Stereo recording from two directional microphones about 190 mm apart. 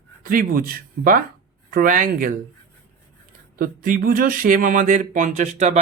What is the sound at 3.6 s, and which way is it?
Speech, 50° right (ahead or behind).